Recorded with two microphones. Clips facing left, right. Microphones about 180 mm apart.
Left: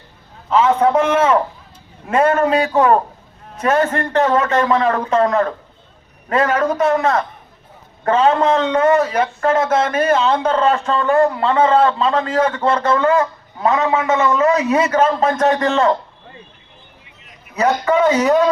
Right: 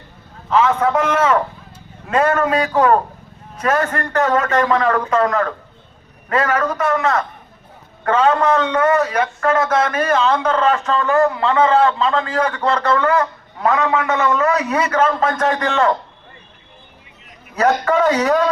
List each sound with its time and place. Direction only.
0.6 s speech: 30° left (ahead or behind)
17.8 s a man's voice: 10° left (ahead or behind)